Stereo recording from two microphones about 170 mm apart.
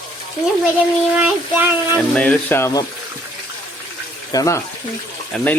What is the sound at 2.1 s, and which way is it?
Speech, 10° left (ahead or behind).